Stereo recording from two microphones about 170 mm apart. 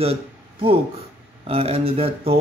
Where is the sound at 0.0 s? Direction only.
35° right (ahead or behind).